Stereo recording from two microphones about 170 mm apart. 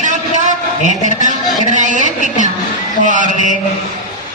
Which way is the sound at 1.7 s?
45° right (ahead or behind).